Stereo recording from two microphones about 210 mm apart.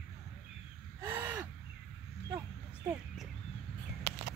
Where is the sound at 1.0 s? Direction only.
10° right (ahead or behind).